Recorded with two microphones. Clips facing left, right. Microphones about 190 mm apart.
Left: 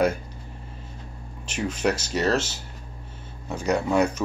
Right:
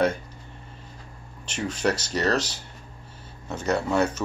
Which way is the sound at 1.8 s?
5° left (ahead or behind).